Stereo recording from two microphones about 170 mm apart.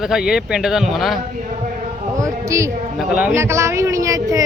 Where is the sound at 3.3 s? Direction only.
15° right (ahead or behind).